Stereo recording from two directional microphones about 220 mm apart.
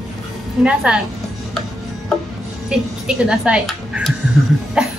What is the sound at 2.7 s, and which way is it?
Speech, 5° right (ahead or behind).